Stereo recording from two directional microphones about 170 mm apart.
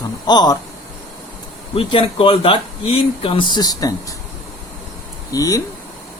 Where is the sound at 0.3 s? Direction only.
25° left (ahead or behind).